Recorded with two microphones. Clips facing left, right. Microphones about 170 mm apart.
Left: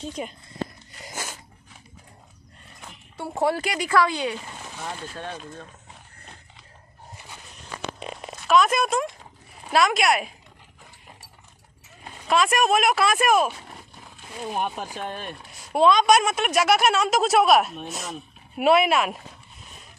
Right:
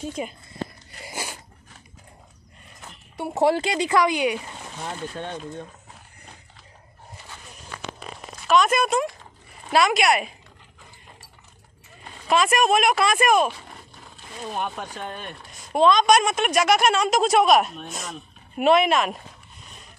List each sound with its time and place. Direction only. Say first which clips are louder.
0.0 s speech: right 2 dB; 5° right (ahead or behind)
1.0 s biting: right 2 dB; 10° right (ahead or behind)
3.2 s speech: right 4 dB; 20° right (ahead or behind)
8.4 s speech: even; centre (ahead or behind)
12.3 s speech: right 1 dB; centre (ahead or behind)